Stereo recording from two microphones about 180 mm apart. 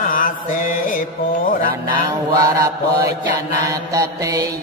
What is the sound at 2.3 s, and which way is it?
Mantra, 20° right (ahead or behind).